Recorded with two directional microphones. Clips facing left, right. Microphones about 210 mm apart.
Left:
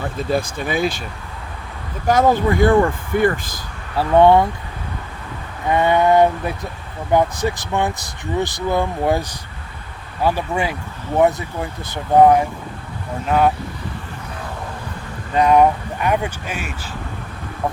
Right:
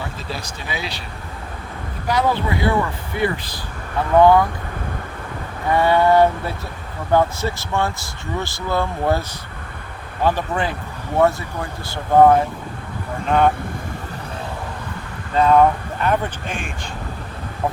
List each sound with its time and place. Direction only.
0.2 s speech: 50° left (ahead or behind)
2.0 s speech: 45° left (ahead or behind)
3.9 s speech: 25° left (ahead or behind)
5.7 s speech: 20° left (ahead or behind)
10.2 s speech: 10° left (ahead or behind)
13.2 s speech: 5° left (ahead or behind)
15.4 s speech: 15° left (ahead or behind)